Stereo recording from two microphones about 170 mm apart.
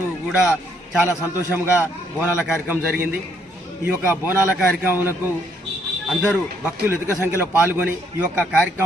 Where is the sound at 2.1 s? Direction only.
10° right (ahead or behind).